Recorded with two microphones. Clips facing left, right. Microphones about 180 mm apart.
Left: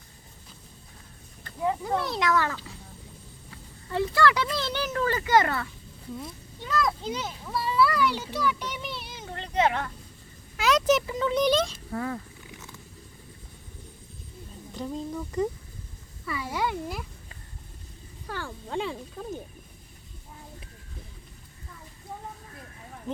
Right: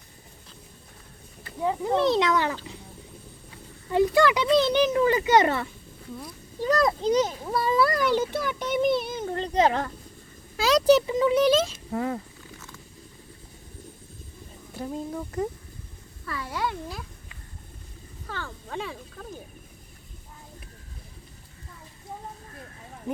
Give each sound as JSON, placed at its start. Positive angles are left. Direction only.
{"t": 1.6, "sound": "a child's voice", "side_deg": -20}
{"t": 3.9, "sound": "speech", "side_deg": -15}
{"t": 6.6, "sound": "a child's voice", "side_deg": -40}
{"t": 10.6, "sound": "a sound", "side_deg": -35}
{"t": 11.0, "sound": "speech", "side_deg": -20}
{"t": 11.3, "sound": "speech", "side_deg": -5}
{"t": 11.9, "sound": "a child's voice", "side_deg": -20}
{"t": 12.5, "sound": "a sound", "side_deg": 20}
{"t": 14.8, "sound": "speech", "side_deg": -10}
{"t": 16.2, "sound": "speech", "side_deg": 10}
{"t": 18.3, "sound": "speech", "side_deg": 10}